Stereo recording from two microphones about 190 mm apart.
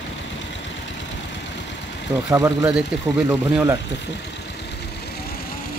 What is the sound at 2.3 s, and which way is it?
Speech, 20° right (ahead or behind).